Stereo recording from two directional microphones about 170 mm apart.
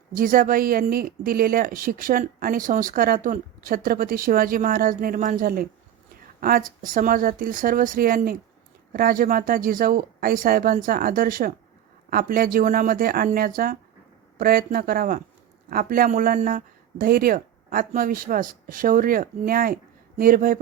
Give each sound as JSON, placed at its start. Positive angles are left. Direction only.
{"t": 0.1, "sound": "speech", "side_deg": -55}